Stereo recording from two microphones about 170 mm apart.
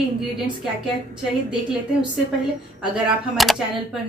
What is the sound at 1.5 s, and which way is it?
Speech, 5° right (ahead or behind).